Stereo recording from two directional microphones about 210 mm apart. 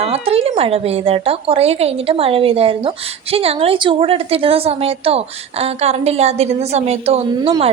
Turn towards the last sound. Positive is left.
turn(degrees=-25)  # may be behind; listen again after turning